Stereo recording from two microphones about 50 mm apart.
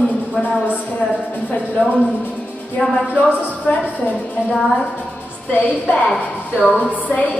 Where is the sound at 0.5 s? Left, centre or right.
Right.